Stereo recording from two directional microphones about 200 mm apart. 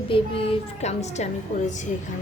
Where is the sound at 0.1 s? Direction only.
30° left (ahead or behind).